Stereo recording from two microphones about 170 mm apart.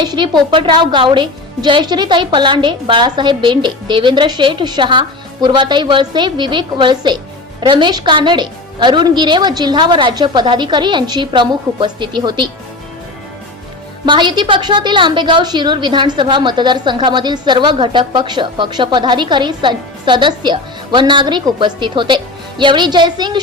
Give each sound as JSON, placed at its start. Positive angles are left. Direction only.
{"t": 0.0, "sound": "a woman's voice", "side_deg": -25}
{"t": 14.0, "sound": "a woman's voice", "side_deg": -25}